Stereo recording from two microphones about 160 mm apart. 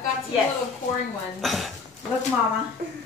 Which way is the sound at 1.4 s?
Centre (ahead or behind).